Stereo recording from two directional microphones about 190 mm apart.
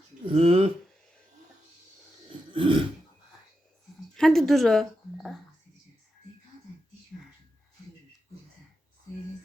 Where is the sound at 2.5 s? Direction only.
25° right (ahead or behind).